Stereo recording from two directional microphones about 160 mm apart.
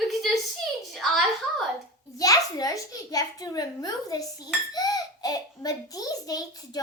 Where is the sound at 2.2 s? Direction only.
20° left (ahead or behind).